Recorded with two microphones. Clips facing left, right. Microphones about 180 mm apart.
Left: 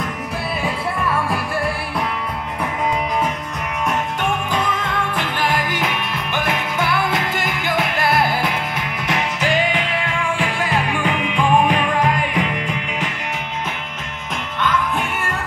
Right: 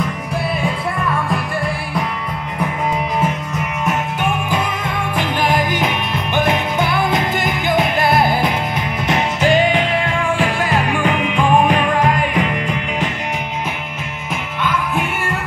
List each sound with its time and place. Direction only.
0.7 s music: 5° left (ahead or behind)
3.8 s music: 10° right (ahead or behind); by 12.5 s 45° right (ahead or behind)
14.6 s music: 5° right (ahead or behind)